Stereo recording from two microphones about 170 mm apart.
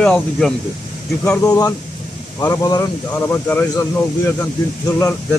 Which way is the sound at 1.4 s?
20° left (ahead or behind).